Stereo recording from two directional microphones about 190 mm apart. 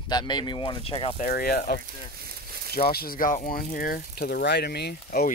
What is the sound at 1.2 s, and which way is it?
Speech, 50° left (ahead or behind).